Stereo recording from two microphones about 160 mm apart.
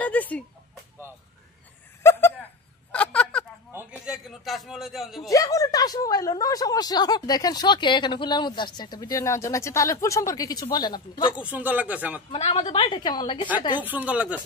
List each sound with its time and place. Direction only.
0.0 s speech: 10° left (ahead or behind)
2.0 s a sound: 15° left (ahead or behind)
3.7 s a man's voice: 5° right (ahead or behind)
5.3 s speech: 20° left (ahead or behind)
11.3 s speech: 10° right (ahead or behind)
12.3 s a woman's voice: 40° left (ahead or behind)
13.9 s speech: 10° right (ahead or behind)